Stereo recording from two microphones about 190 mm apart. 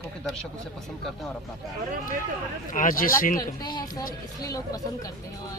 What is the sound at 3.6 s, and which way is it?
Speech, 20° left (ahead or behind).